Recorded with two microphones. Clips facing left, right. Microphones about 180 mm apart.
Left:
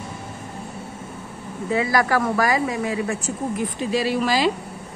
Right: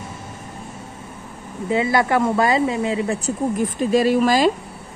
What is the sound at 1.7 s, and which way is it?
A woman's voice, 25° right (ahead or behind).